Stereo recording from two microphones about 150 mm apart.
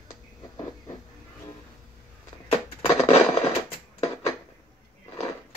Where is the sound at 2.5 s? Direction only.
40° left (ahead or behind).